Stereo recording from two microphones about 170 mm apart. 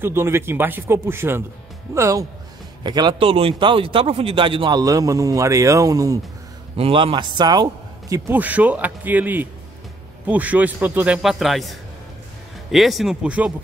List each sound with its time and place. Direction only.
0.0 s a man's voice: 15° right (ahead or behind)
6.8 s a man's voice: 35° right (ahead or behind)
8.3 s a man's voice: 10° right (ahead or behind)
12.7 s speech: centre (ahead or behind)